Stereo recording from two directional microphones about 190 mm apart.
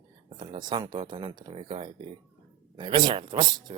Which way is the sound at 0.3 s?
25° right (ahead or behind).